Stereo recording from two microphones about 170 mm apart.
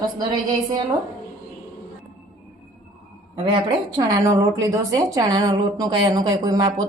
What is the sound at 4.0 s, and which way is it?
A woman's voice, 20° right (ahead or behind).